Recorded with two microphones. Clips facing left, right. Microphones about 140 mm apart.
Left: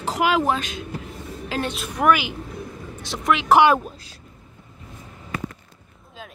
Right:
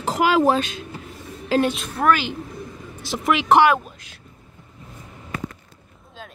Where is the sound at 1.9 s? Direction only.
15° left (ahead or behind).